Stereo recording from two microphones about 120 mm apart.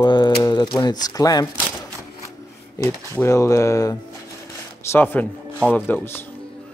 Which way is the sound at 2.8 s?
30° left (ahead or behind).